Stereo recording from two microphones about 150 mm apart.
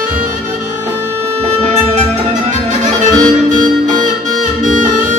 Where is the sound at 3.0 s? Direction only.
60° right (ahead or behind).